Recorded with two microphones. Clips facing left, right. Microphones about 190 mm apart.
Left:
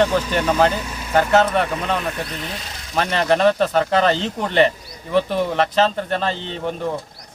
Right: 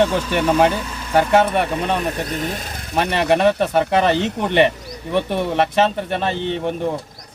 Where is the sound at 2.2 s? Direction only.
45° right (ahead or behind).